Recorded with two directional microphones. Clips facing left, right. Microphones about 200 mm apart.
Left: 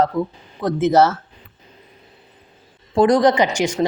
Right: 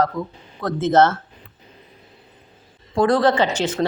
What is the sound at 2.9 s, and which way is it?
Speech, 20° left (ahead or behind).